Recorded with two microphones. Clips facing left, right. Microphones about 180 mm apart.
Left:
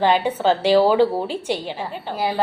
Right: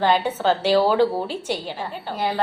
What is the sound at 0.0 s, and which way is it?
A woman's voice, 10° left (ahead or behind).